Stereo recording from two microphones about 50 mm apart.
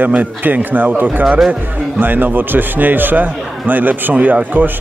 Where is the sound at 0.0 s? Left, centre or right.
Right.